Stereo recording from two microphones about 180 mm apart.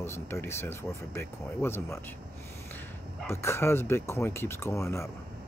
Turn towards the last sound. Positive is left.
turn(degrees=15)  # may be behind; listen again after turning